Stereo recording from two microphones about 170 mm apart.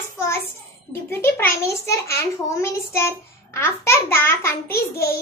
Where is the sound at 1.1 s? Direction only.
15° left (ahead or behind).